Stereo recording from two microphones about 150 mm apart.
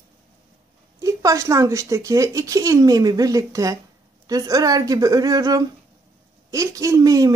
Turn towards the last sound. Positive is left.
turn(degrees=-25)  # may be behind; listen again after turning